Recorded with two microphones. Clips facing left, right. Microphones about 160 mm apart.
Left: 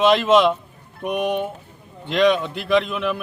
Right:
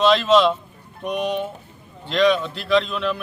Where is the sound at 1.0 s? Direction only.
55° left (ahead or behind).